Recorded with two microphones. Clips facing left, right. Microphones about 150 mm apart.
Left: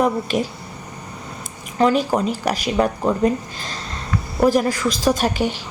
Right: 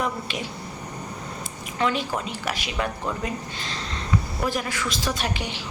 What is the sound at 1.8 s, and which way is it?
A woman's voice, 40° left (ahead or behind).